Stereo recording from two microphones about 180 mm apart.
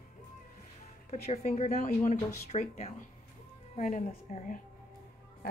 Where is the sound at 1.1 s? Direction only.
35° left (ahead or behind).